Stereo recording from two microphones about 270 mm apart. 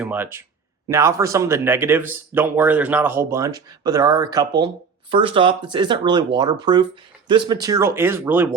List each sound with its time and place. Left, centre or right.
0.0 s speech: centre